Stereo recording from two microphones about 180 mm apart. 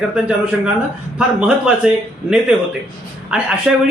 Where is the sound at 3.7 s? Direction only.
5° right (ahead or behind).